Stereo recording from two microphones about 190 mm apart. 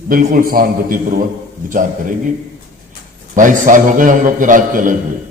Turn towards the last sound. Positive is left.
turn(degrees=-45)  # may be behind; listen again after turning